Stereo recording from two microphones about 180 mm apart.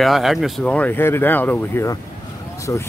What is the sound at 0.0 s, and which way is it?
Speech, centre (ahead or behind).